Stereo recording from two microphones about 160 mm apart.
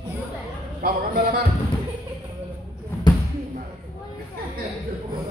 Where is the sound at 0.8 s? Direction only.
65° right (ahead or behind).